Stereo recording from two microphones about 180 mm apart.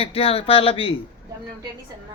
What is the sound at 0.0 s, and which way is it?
Speech, 30° left (ahead or behind).